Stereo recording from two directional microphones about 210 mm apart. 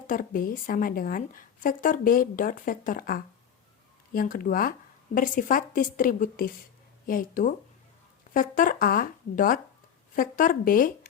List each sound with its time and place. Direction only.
0.1 s speech: 40° left (ahead or behind)